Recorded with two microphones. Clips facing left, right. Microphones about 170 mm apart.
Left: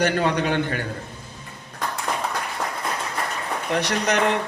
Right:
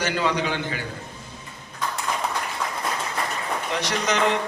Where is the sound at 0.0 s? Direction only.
55° left (ahead or behind).